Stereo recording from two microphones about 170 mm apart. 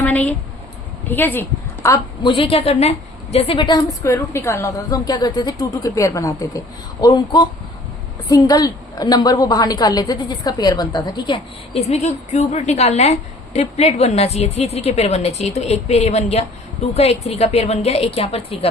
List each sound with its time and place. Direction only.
0.0 s a woman's voice: 10° left (ahead or behind)
2.2 s a woman's voice: 30° left (ahead or behind)